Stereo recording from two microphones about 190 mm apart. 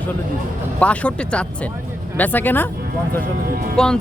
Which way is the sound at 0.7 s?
5° left (ahead or behind).